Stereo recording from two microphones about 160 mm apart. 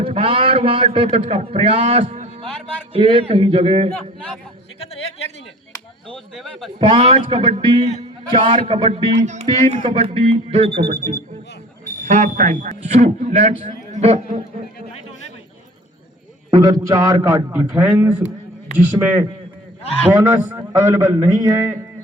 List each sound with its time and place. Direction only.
0.0 s a man's voice: 35° right (ahead or behind)
6.1 s speech: centre (ahead or behind)
6.7 s speech: 30° right (ahead or behind)
9.1 s a man's voice: 45° right (ahead or behind)
9.8 s speech: 35° right (ahead or behind)
12.0 s a man's voice: 50° right (ahead or behind)
16.5 s a man's voice: 25° right (ahead or behind)
20.3 s a man's voice: 10° right (ahead or behind)